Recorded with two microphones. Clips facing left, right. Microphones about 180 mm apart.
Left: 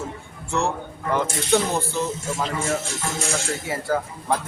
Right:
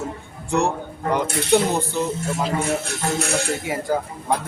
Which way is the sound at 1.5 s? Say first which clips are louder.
Right 2 dB; 15° right (ahead or behind).